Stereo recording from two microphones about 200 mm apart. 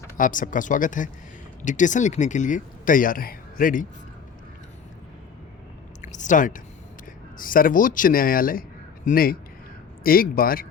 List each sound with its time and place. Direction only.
0.2 s speech: 40° left (ahead or behind)
6.0 s a sound: 40° left (ahead or behind)
7.3 s speech: 45° left (ahead or behind)